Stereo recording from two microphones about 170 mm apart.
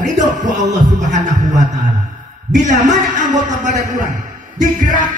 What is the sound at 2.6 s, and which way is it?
A man's voice, 45° right (ahead or behind).